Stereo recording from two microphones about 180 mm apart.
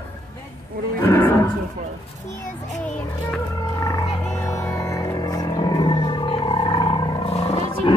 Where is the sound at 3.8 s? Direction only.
15° left (ahead or behind).